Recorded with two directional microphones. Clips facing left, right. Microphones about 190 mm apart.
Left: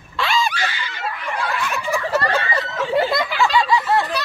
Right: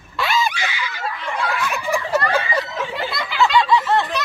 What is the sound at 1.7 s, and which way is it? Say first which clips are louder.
Snicker: even; centre (ahead or behind).